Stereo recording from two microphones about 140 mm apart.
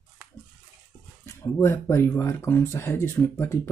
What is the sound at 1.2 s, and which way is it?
Speech, 20° left (ahead or behind).